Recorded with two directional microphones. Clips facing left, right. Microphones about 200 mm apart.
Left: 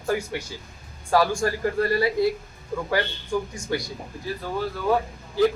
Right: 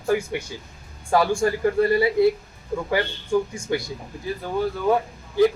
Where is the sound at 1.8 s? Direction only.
20° right (ahead or behind).